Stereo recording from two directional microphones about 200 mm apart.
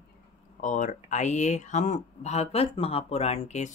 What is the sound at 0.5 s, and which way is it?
Speech, 40° left (ahead or behind).